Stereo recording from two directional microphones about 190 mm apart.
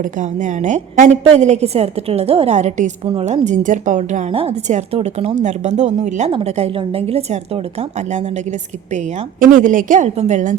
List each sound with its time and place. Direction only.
0.0 s a woman's voice: 40° right (ahead or behind)
4.3 s a woman's voice: 30° right (ahead or behind)